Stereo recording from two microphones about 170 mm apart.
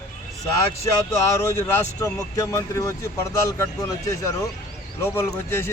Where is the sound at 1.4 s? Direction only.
15° left (ahead or behind).